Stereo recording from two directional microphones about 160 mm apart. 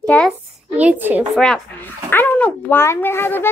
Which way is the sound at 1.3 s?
5° left (ahead or behind).